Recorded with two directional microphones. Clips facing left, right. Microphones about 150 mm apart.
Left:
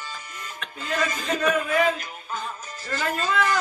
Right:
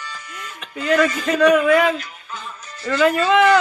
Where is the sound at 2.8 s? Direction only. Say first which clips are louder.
Right 10 dB; 90° right.